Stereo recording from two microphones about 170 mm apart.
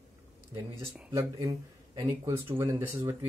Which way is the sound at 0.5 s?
10° right (ahead or behind).